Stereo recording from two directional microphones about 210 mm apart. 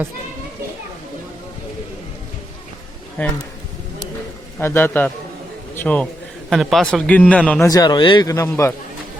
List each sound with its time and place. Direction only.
3.2 s speech: 10° left (ahead or behind)
4.6 s a man's voice: 10° left (ahead or behind)
7.7 s speech: 20° left (ahead or behind)